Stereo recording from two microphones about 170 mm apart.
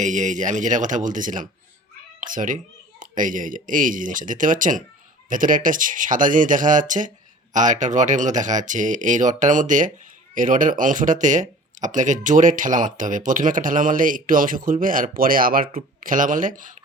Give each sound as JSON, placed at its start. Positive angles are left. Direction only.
{"t": 0.0, "sound": "speech", "side_deg": -45}